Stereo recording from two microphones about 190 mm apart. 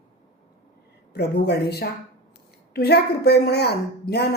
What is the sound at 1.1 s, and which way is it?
A woman's voice, 60° left (ahead or behind).